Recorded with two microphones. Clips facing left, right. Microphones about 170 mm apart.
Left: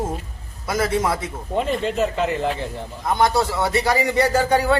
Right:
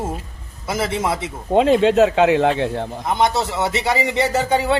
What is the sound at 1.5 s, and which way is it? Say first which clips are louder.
Speech: right 9 dB; 90° right.